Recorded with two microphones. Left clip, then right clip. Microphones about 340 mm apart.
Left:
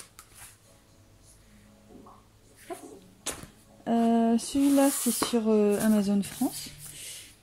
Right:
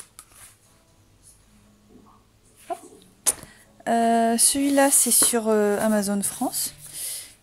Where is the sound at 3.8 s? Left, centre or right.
Right.